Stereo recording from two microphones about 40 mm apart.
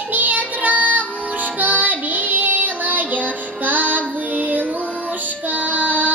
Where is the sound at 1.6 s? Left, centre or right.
Right.